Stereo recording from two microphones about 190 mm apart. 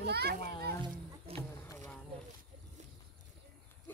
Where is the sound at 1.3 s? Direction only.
30° right (ahead or behind).